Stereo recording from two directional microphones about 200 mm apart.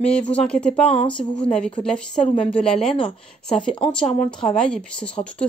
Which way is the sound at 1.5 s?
5° left (ahead or behind).